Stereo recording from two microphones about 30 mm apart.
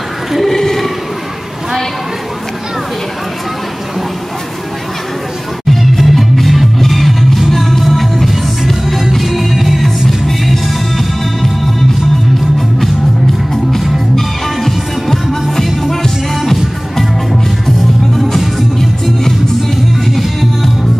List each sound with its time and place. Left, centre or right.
0.5 s a sound: centre
5.7 s music: centre
14.1 s music: centre
15.6 s music: centre